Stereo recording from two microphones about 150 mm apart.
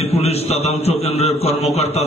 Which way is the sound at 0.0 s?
45° left (ahead or behind).